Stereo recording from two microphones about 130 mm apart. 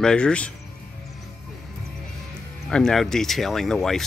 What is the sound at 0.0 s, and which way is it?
Speech, 5° left (ahead or behind).